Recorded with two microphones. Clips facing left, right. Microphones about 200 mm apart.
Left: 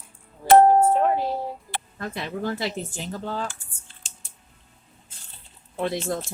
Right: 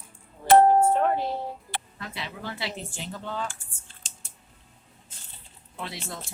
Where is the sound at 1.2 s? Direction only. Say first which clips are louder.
Left 3 dB; 45° left (ahead or behind).